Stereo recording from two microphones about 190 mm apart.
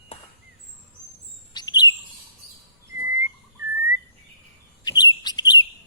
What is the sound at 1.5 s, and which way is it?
Chirp, 20° left (ahead or behind).